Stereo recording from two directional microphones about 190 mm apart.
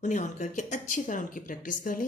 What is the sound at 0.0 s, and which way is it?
Speech, 40° left (ahead or behind).